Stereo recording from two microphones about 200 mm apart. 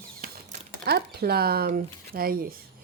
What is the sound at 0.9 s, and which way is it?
Speech, 50° right (ahead or behind).